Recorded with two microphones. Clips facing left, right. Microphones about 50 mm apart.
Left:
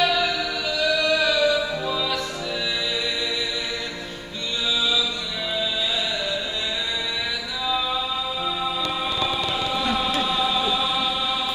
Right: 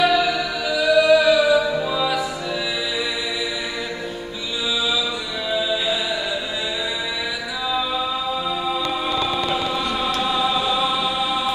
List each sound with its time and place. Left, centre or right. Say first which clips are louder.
0.0 s music: right 4 dB; centre
7.6 s music: right 1 dB; centre
9.3 s choir: right 3 dB; centre